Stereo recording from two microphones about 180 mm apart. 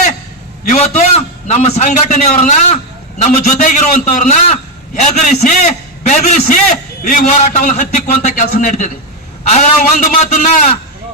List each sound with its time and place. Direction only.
0.6 s a man's voice: 40° left (ahead or behind)